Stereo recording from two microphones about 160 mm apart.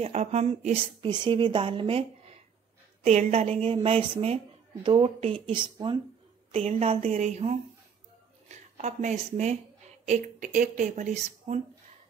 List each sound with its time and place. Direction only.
0.0 s a woman's voice: 40° right (ahead or behind)
6.5 s speech: 40° right (ahead or behind)